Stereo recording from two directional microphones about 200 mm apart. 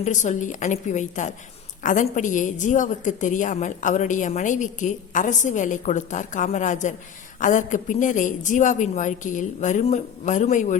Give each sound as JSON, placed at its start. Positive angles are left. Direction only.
{"t": 0.0, "sound": "a woman's voice", "side_deg": 35}